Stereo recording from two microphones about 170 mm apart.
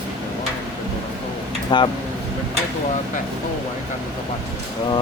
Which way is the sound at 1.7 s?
25° left (ahead or behind).